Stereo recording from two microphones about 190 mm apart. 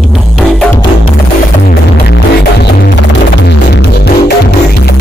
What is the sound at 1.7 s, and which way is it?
Music, 60° left (ahead or behind).